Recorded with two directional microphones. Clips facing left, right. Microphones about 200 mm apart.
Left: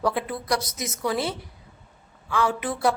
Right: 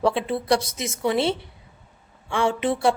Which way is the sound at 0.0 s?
25° right (ahead or behind).